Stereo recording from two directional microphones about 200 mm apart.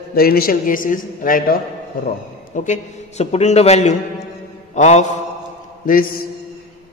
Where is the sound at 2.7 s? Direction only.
35° left (ahead or behind).